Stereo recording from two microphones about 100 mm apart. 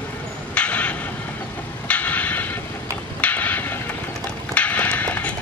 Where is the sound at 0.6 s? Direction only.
15° left (ahead or behind).